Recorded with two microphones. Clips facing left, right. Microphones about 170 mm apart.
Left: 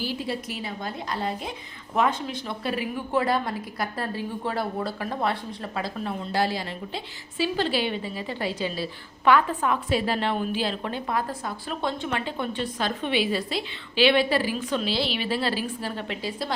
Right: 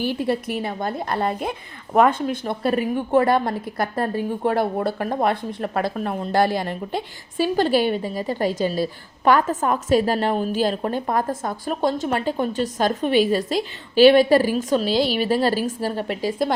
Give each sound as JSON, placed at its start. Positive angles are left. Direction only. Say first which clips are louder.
{"t": 0.0, "sound": "a woman's voice", "louder": "right 7 dB", "side_deg": -55}